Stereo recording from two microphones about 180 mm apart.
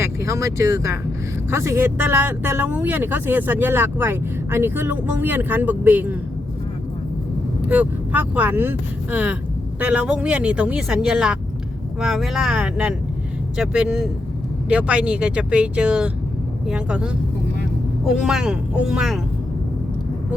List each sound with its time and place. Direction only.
0.0 s speech: 15° right (ahead or behind)
7.7 s speech: 10° right (ahead or behind)